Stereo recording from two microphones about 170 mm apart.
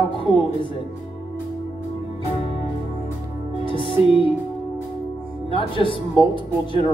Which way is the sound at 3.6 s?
30° left (ahead or behind).